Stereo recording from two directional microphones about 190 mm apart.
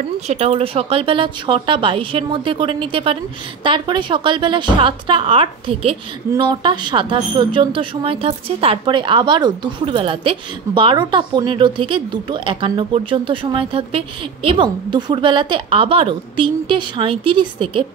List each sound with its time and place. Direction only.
0.3 s a woman's voice: 30° right (ahead or behind)